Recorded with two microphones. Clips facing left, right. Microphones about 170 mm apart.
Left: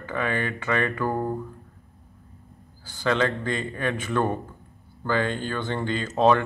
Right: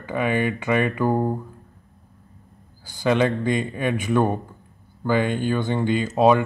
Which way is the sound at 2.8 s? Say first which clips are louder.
Right 4 dB; 15° right (ahead or behind).